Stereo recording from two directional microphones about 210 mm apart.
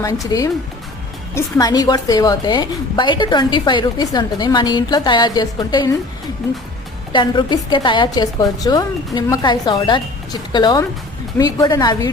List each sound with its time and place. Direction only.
0.0 s a woman's voice: 15° left (ahead or behind)
7.1 s a woman's voice: 20° left (ahead or behind)